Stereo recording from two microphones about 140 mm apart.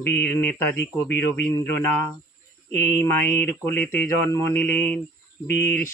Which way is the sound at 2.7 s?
15° left (ahead or behind).